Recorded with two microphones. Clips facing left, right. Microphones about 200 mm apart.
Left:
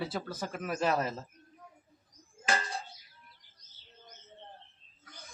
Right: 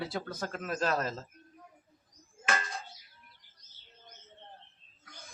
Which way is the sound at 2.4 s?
30° left (ahead or behind).